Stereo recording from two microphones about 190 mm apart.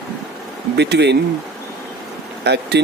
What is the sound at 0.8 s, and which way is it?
Speech, 60° right (ahead or behind).